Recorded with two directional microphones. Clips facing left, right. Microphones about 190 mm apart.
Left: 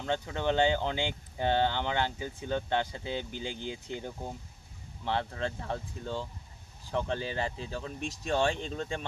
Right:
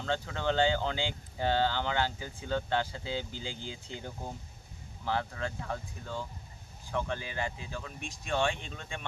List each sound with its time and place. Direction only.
0.0 s speech: 15° left (ahead or behind)
5.0 s speech: 25° left (ahead or behind)